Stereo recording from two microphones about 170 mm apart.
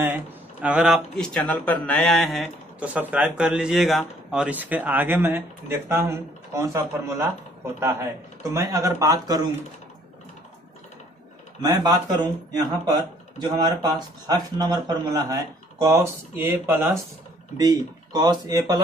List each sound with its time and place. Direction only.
0.0 s speech: 10° right (ahead or behind)
11.6 s speech: 25° right (ahead or behind)